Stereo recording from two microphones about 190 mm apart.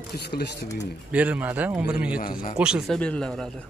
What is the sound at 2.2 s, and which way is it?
Speech, 50° left (ahead or behind).